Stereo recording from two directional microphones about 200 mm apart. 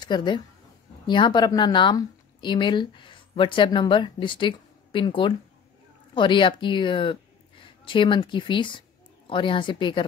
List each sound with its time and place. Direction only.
0.0 s speech: 20° left (ahead or behind)